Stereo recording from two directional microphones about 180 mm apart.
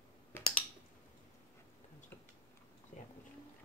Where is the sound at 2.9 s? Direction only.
40° left (ahead or behind).